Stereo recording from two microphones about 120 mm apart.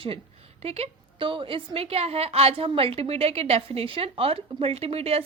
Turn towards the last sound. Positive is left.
turn(degrees=-55)  # may be behind; listen again after turning